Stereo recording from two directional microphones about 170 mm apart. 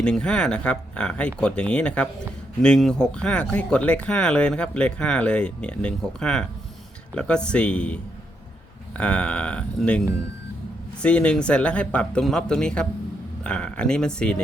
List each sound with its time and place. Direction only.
0.0 s speech: 5° left (ahead or behind)
11.0 s speech: 5° left (ahead or behind)